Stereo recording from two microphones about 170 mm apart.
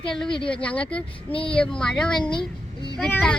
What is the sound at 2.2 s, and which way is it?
Speech, 25° left (ahead or behind).